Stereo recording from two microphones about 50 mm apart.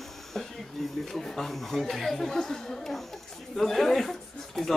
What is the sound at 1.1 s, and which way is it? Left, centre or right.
Speech, centre.